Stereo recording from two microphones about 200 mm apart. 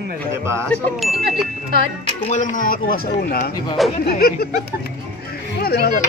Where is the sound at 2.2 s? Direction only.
40° left (ahead or behind).